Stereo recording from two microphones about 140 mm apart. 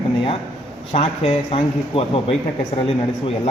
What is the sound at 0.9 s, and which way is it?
Speech, 40° left (ahead or behind).